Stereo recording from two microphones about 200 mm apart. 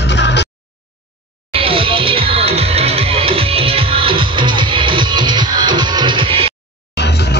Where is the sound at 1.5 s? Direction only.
25° right (ahead or behind).